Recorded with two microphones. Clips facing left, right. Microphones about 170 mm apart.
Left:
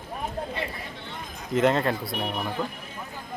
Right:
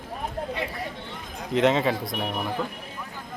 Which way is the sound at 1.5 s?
Centre (ahead or behind).